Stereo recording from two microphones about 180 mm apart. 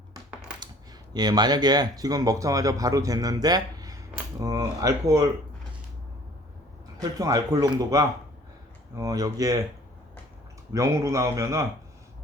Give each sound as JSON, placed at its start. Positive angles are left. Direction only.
{"t": 1.1, "sound": "speech", "side_deg": -20}
{"t": 7.0, "sound": "speech", "side_deg": -20}
{"t": 10.7, "sound": "a man's voice", "side_deg": -15}